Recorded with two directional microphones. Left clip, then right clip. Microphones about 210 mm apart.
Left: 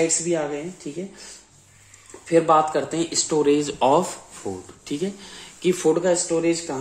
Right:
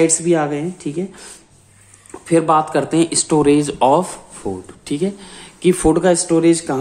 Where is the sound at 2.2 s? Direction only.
20° right (ahead or behind).